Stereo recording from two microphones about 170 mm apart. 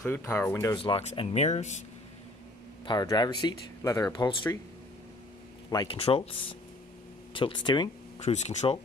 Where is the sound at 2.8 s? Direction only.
25° left (ahead or behind).